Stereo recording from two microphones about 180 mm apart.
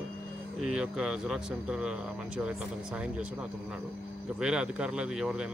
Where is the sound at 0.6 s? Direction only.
5° right (ahead or behind).